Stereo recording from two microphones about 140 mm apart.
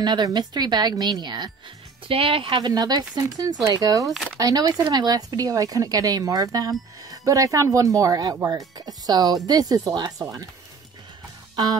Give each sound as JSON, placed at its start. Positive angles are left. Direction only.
{"t": 0.0, "sound": "a woman's voice", "side_deg": -30}
{"t": 4.0, "sound": "speech", "side_deg": 0}
{"t": 4.4, "sound": "speech", "side_deg": -25}